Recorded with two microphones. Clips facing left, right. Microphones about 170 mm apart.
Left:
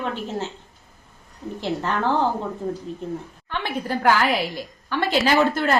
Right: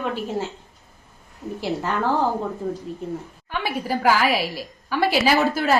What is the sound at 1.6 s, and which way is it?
Speech, 10° right (ahead or behind).